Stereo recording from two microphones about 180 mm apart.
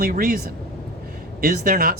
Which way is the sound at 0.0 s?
55° right (ahead or behind).